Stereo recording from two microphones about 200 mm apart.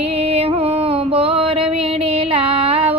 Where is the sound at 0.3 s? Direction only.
25° right (ahead or behind).